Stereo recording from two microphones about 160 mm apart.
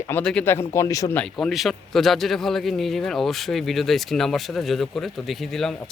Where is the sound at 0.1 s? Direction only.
5° left (ahead or behind).